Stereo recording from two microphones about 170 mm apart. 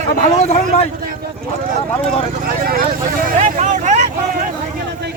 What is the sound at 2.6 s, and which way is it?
Speech, 60° right (ahead or behind).